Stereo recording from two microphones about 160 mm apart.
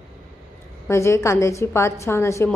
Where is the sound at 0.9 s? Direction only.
15° left (ahead or behind).